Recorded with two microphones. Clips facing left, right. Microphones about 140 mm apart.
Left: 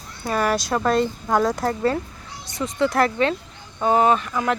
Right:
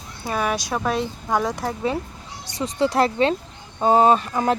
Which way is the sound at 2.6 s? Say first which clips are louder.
Even; 35° right (ahead or behind).